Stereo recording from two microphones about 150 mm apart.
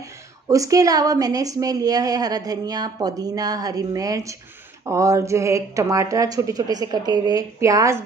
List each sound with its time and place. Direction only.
0.5 s a woman's voice: 20° right (ahead or behind)